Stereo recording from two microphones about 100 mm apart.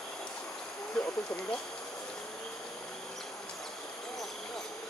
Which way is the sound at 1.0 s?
10° left (ahead or behind).